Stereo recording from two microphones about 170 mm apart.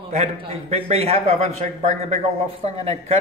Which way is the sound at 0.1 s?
35° right (ahead or behind).